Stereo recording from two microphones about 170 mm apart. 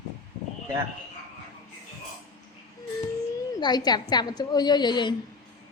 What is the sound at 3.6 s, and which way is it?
A woman's voice, 25° left (ahead or behind).